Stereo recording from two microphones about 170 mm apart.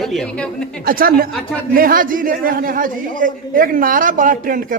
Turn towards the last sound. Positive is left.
turn(degrees=-55)  # may be behind; listen again after turning